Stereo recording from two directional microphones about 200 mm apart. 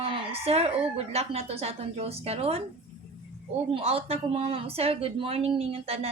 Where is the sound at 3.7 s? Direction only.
30° right (ahead or behind).